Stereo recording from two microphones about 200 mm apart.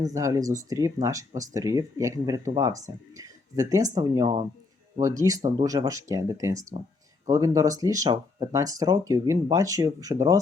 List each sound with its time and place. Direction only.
0.1 s speech: 15° right (ahead or behind)